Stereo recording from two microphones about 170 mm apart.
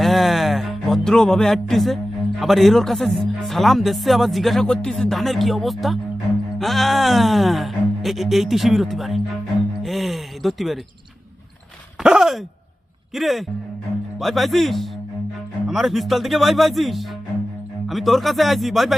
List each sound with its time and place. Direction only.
0.0 s music: centre (ahead or behind)
2.4 s speech: centre (ahead or behind)
11.9 s speech: 5° right (ahead or behind)